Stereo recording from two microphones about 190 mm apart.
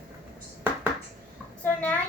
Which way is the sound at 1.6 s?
10° left (ahead or behind).